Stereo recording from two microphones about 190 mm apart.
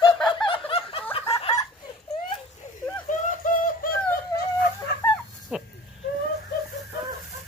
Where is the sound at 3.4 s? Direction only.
45° left (ahead or behind).